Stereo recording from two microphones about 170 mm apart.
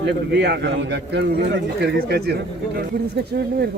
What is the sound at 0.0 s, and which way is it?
A man's voice, 85° right.